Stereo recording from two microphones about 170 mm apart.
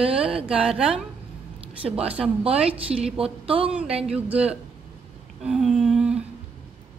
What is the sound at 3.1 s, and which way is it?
Speech, 35° right (ahead or behind).